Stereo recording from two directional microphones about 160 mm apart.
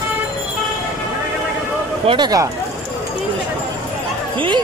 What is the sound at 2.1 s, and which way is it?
Speech, 25° right (ahead or behind).